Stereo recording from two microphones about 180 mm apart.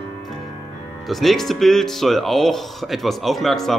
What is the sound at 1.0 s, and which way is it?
Speech, centre (ahead or behind).